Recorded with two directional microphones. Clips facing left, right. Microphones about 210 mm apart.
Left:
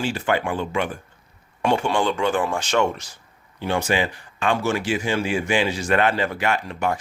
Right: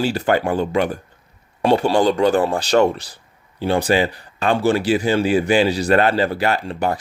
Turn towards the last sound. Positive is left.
turn(degrees=-35)  # may be behind; listen again after turning